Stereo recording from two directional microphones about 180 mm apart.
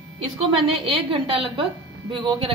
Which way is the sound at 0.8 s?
30° right (ahead or behind).